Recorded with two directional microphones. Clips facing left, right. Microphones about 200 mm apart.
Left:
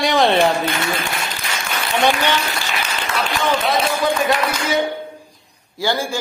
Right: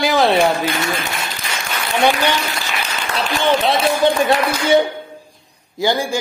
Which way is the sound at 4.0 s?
30° right (ahead or behind).